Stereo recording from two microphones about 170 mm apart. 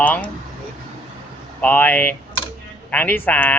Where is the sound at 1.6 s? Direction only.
10° left (ahead or behind).